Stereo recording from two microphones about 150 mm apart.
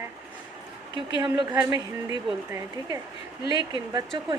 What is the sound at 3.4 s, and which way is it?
Speech, 30° right (ahead or behind).